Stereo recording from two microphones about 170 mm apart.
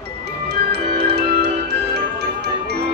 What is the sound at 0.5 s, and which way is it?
Music, 75° right (ahead or behind).